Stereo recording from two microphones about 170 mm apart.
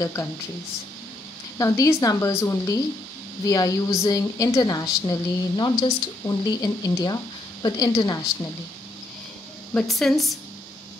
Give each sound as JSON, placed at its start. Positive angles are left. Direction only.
{"t": 0.0, "sound": "speech", "side_deg": 15}
{"t": 1.6, "sound": "a woman's voice", "side_deg": 20}
{"t": 9.8, "sound": "a woman's voice", "side_deg": 0}